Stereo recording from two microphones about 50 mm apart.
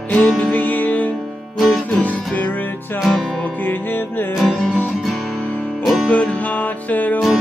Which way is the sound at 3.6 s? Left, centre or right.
Left.